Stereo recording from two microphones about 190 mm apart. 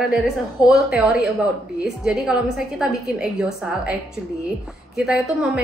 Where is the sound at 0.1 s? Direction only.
Centre (ahead or behind).